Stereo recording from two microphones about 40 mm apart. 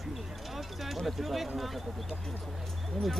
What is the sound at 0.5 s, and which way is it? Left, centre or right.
Speech, centre.